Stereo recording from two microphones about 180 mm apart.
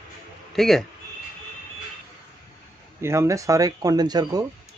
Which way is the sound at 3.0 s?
15° right (ahead or behind).